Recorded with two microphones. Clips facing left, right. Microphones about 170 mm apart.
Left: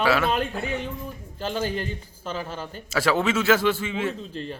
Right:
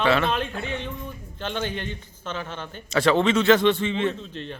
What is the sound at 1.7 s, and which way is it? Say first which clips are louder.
Speech: left 2 dB; 35° left (ahead or behind).